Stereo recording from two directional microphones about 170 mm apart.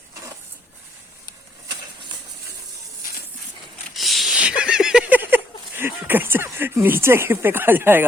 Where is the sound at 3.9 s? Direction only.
Centre (ahead or behind).